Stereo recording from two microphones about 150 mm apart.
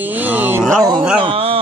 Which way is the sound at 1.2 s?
40° right (ahead or behind).